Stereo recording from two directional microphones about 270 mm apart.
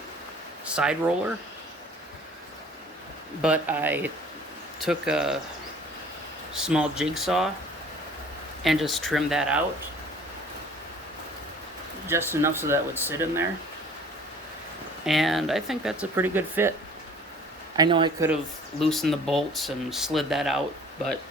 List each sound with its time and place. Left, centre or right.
0.6 s speech: centre
3.4 s speech: centre
6.5 s speech: centre
8.6 s speech: centre
12.0 s speech: centre
15.0 s speech: centre
17.7 s speech: centre
18.8 s speech: centre